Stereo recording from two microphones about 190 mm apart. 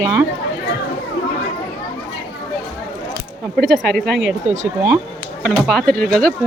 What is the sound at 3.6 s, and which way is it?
Speech, centre (ahead or behind).